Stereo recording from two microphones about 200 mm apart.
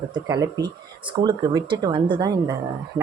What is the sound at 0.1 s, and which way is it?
Speech, 15° right (ahead or behind).